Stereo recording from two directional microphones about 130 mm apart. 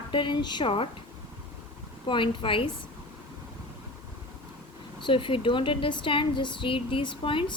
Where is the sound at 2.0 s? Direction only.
40° left (ahead or behind).